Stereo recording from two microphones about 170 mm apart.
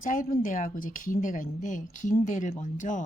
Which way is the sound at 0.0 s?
55° left (ahead or behind).